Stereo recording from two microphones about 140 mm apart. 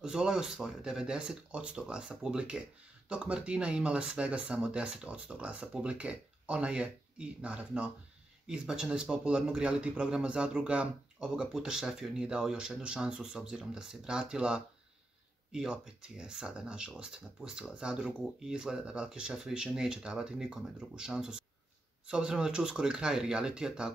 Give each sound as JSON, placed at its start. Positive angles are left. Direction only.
{"t": 0.0, "sound": "a man's voice", "side_deg": -5}